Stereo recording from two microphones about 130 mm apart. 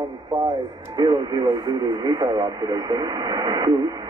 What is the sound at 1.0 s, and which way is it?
Speech, 30° right (ahead or behind).